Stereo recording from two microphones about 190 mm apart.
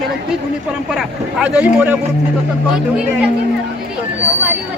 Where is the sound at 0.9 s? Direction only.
5° right (ahead or behind).